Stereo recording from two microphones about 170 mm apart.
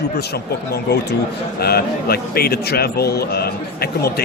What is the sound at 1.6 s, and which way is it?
A man's voice, 65° left (ahead or behind).